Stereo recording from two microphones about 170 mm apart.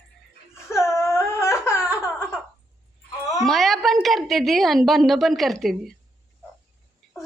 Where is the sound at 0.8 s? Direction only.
15° left (ahead or behind).